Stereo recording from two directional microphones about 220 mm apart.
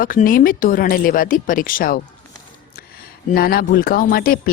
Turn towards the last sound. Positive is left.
turn(degrees=40)  # may be behind; listen again after turning